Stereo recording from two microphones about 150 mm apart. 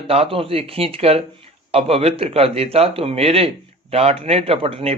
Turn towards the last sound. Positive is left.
turn(degrees=-40)  # may be behind; listen again after turning